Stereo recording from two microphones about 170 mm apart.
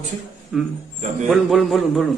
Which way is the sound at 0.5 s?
Centre (ahead or behind).